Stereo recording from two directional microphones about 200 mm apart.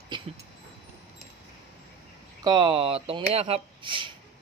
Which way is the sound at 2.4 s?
20° right (ahead or behind).